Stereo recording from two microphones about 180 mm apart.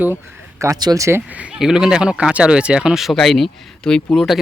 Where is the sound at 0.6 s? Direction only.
20° right (ahead or behind).